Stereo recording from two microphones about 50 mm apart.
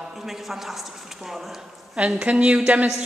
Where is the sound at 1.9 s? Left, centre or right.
Right.